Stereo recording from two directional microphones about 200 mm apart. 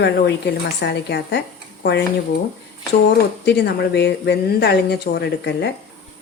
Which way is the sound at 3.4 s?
55° left (ahead or behind).